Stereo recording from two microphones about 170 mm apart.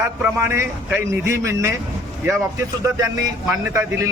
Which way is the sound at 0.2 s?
15° right (ahead or behind).